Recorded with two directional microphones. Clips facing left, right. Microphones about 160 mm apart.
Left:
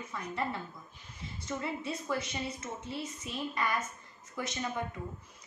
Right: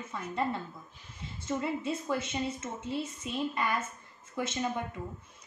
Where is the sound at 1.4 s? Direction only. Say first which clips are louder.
Right 4 dB; 25° right (ahead or behind).